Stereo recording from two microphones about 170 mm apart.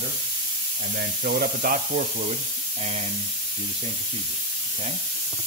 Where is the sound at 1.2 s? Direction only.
65° right (ahead or behind).